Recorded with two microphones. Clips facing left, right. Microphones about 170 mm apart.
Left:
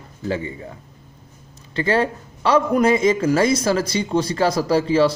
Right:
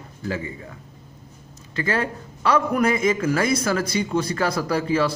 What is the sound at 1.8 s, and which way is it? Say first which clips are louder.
A man's voice: left 5 dB; 30° left (ahead or behind).